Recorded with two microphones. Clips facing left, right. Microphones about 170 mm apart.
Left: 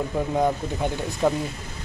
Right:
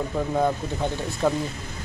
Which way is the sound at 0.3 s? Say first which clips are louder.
Even; 10° left (ahead or behind).